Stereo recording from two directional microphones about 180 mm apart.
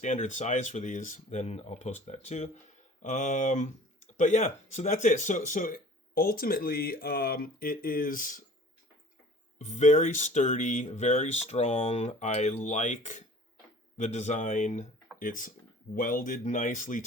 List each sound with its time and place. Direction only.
0.0 s speech: 40° left (ahead or behind)
9.6 s speech: 40° left (ahead or behind)